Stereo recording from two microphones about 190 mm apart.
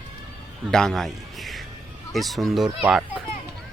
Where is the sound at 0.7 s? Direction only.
Centre (ahead or behind).